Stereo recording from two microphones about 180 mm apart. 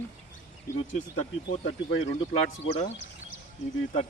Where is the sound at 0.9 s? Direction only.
45° left (ahead or behind).